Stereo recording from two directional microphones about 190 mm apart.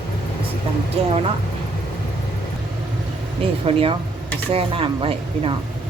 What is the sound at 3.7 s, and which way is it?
Speech, 30° right (ahead or behind).